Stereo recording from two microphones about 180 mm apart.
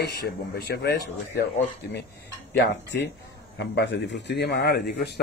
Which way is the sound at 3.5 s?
75° left (ahead or behind).